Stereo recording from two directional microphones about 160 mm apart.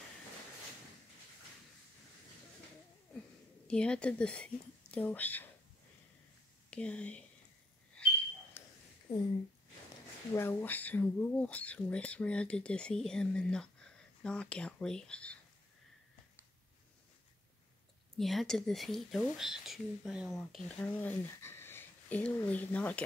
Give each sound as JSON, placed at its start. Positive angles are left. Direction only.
{"t": 3.6, "sound": "speech", "side_deg": 5}
{"t": 6.7, "sound": "speech", "side_deg": 5}
{"t": 7.9, "sound": "a sound", "side_deg": 10}
{"t": 9.1, "sound": "speech", "side_deg": 25}
{"t": 10.3, "sound": "speech", "side_deg": 15}
{"t": 18.1, "sound": "a woman's voice", "side_deg": 0}